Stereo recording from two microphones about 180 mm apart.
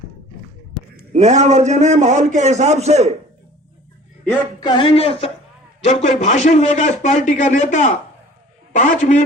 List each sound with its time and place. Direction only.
1.1 s a man's voice: 40° right (ahead or behind)
4.6 s a man's voice: 25° left (ahead or behind); by 9.2 s 45° left (ahead or behind)